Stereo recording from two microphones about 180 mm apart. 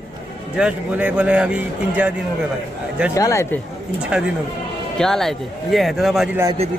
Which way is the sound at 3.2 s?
20° left (ahead or behind).